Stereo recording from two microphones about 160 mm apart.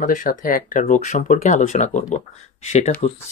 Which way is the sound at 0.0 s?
55° left (ahead or behind).